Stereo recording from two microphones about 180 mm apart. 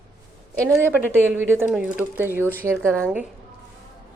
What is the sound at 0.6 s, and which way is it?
A woman's voice, 15° right (ahead or behind).